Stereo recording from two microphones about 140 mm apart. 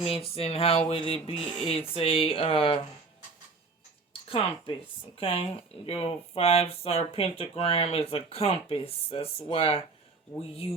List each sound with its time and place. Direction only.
0.0 s speech: 45° left (ahead or behind)
4.3 s speech: 35° left (ahead or behind)